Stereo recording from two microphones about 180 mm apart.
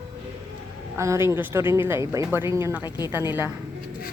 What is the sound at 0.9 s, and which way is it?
Speech, 15° right (ahead or behind).